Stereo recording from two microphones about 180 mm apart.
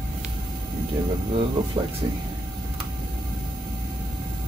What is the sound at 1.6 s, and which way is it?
Speech, 25° right (ahead or behind).